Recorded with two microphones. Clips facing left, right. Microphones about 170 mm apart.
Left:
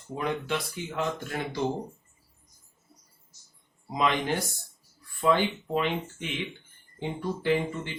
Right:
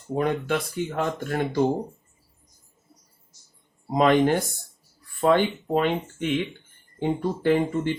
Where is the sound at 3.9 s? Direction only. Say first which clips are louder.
Right 8 dB; 50° right (ahead or behind).